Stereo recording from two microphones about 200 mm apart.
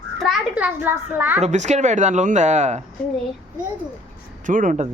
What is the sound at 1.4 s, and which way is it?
Speech, 35° right (ahead or behind).